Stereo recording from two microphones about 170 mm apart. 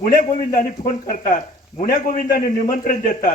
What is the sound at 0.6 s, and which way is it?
Speech, 50° left (ahead or behind).